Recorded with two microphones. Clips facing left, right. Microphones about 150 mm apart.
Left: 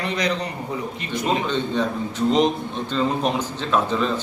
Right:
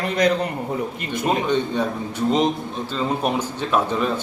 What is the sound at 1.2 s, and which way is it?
A man's voice, 10° right (ahead or behind).